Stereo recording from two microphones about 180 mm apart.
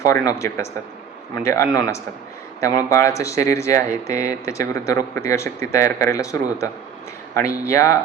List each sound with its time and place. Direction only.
0.0 s speech: 15° left (ahead or behind)
7.3 s speech: 15° left (ahead or behind)